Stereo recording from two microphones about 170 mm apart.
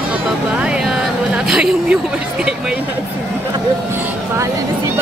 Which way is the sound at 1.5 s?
5° right (ahead or behind).